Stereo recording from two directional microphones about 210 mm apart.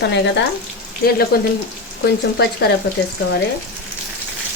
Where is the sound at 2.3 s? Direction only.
55° left (ahead or behind).